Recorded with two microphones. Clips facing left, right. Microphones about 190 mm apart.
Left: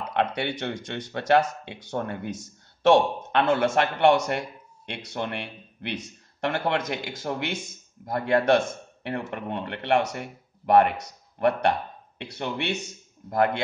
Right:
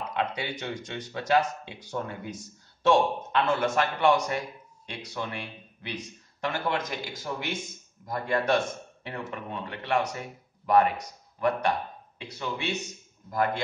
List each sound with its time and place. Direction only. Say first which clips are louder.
0.1 s speech: left 6 dB; 65° left (ahead or behind)